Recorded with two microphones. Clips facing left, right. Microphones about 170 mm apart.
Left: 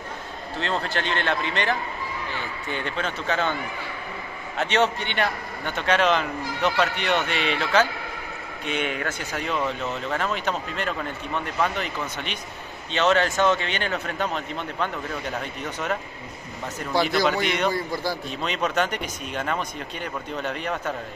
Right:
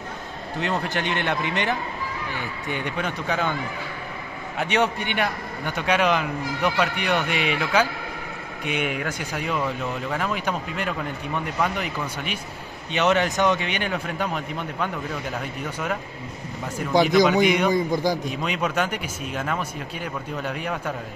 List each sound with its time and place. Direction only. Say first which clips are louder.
0.6 s a man's voice: right 1 dB; 15° right (ahead or behind)
4.6 s a man's voice: even; 10° right (ahead or behind)